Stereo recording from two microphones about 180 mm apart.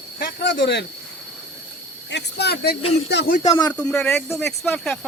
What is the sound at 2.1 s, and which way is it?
Speech, 65° left (ahead or behind).